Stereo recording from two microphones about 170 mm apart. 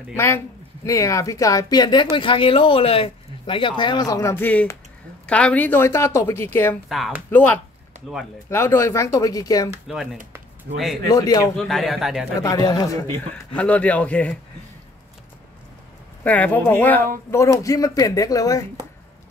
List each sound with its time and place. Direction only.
0.1 s speech: 15° left (ahead or behind)
9.9 s a man's voice: centre (ahead or behind)
10.7 s a man's voice: 90° right
11.1 s speech: 20° left (ahead or behind)
11.5 s a man's voice: centre (ahead or behind)
12.4 s speech: 20° left (ahead or behind)
13.6 s speech: 10° left (ahead or behind)
16.3 s speech: 10° left (ahead or behind)